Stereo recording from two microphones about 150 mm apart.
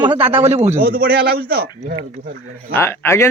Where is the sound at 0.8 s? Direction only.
85° right.